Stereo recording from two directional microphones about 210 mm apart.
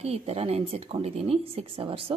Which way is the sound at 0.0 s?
30° right (ahead or behind).